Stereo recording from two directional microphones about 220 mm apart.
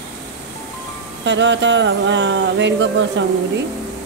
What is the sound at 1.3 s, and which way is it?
Speech, 55° right (ahead or behind).